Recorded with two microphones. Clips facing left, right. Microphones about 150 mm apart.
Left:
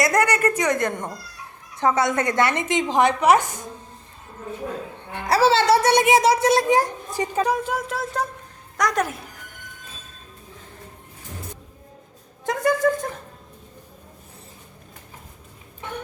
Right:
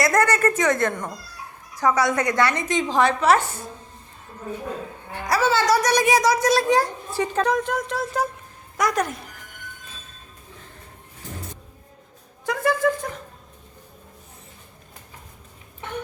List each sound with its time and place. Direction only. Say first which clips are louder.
0.0 s a woman's voice: even; 15° left (ahead or behind)
5.1 s a child's voice: left 3 dB; 30° left (ahead or behind); by 9.1 s centre (ahead or behind)
12.6 s speech: left 1 dB; 45° left (ahead or behind)